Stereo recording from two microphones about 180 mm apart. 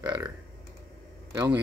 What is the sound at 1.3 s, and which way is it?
Speech, 15° right (ahead or behind).